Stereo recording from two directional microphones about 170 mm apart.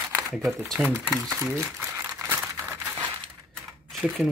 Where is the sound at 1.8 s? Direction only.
15° right (ahead or behind).